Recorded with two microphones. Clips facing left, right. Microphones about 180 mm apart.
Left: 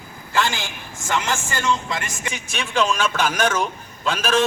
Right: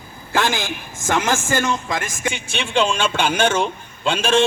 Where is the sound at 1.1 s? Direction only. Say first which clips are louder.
Right 5 dB; 50° right (ahead or behind).